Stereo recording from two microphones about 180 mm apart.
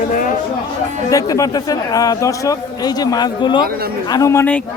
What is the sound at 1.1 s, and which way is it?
Speech, 20° left (ahead or behind).